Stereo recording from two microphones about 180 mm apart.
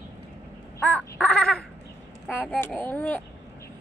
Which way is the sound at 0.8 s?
10° left (ahead or behind).